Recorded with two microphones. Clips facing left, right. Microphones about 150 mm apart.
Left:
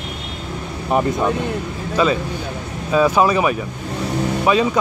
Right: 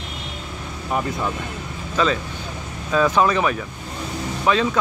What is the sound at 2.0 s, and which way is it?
Speech, 10° left (ahead or behind).